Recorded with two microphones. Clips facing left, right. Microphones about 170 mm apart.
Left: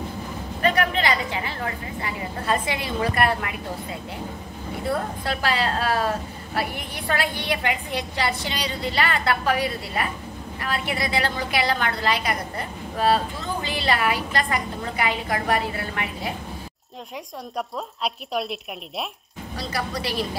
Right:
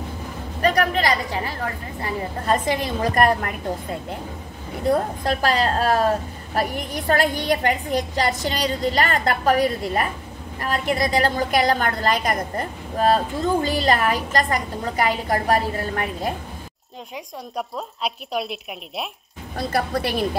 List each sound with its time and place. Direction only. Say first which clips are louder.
0.6 s a sound: right 2 dB; 40° right (ahead or behind)
2.0 s a woman's voice: right 3 dB; 40° right (ahead or behind)
5.2 s a woman's voice: right 4 dB; 40° right (ahead or behind)
17.6 s a woman's voice: right 1 dB; centre (ahead or behind)
19.5 s a woman's voice: right 6 dB; 55° right (ahead or behind)